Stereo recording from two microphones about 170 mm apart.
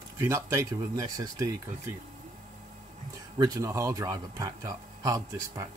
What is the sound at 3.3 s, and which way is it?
Speech, 20° right (ahead or behind).